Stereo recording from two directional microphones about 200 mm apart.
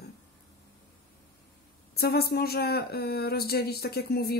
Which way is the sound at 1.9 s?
50° left (ahead or behind).